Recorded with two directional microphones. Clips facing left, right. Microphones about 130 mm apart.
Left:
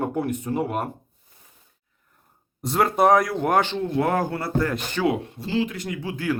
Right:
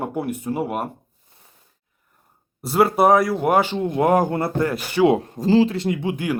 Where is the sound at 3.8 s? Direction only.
20° right (ahead or behind).